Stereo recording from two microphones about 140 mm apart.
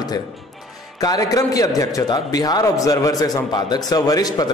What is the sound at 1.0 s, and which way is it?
A man's voice, 25° left (ahead or behind).